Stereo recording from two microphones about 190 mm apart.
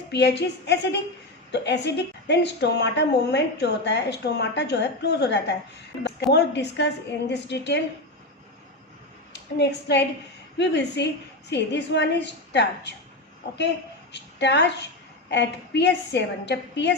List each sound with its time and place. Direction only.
0.1 s a woman's voice: 65° left (ahead or behind)
9.3 s a woman's voice: 65° left (ahead or behind)
14.1 s a woman's voice: 65° left (ahead or behind)